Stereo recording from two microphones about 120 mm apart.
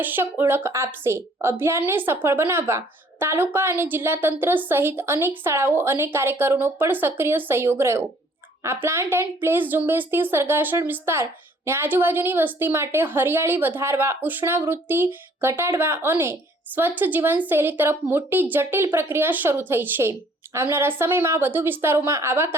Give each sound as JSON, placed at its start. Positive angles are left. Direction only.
{"t": 0.0, "sound": "a woman's voice", "side_deg": -15}